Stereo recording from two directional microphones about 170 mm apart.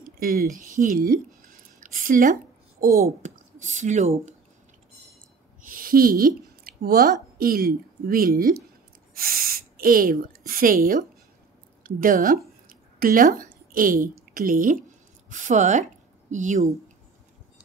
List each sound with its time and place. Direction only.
0.0 s speech: 55° right (ahead or behind)
5.7 s a woman's voice: 60° right (ahead or behind)